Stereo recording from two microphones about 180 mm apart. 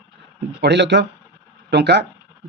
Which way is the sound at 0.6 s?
75° right (ahead or behind).